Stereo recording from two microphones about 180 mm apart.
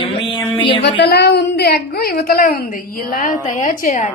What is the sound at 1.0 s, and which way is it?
A woman's voice, 65° left (ahead or behind).